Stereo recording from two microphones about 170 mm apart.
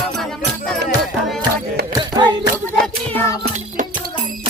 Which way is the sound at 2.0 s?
25° right (ahead or behind).